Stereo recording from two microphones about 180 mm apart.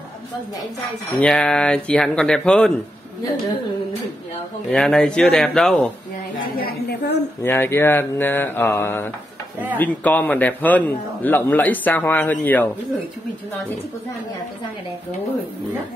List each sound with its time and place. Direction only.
1.2 s speech: 5° left (ahead or behind)
4.6 s speech: 5° left (ahead or behind)
6.5 s a woman's voice: 60° left (ahead or behind)
7.4 s a man's voice: 10° left (ahead or behind)